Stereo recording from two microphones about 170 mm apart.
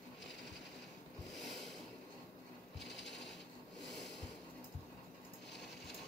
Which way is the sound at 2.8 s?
90° left.